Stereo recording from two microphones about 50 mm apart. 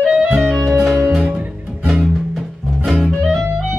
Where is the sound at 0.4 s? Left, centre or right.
Centre.